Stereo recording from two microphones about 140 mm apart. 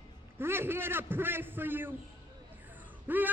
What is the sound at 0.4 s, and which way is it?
A man's voice, 15° right (ahead or behind).